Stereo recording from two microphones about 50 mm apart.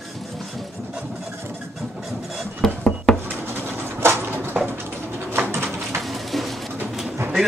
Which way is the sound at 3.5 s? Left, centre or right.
Right.